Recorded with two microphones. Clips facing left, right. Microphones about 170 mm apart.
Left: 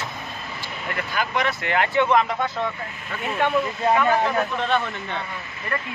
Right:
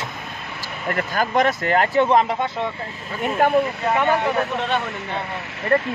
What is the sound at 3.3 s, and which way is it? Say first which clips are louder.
Speech: right 4 dB; 40° right (ahead or behind).